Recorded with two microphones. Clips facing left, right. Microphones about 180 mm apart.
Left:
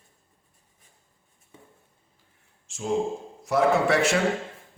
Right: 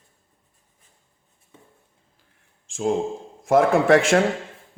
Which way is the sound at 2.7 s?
50° right (ahead or behind).